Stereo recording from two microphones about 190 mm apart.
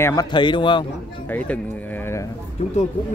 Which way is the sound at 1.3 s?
10° left (ahead or behind).